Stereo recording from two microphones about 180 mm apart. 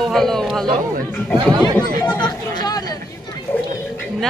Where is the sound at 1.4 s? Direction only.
20° right (ahead or behind).